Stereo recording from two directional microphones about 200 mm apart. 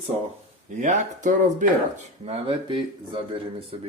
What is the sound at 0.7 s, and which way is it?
Speech, 40° right (ahead or behind).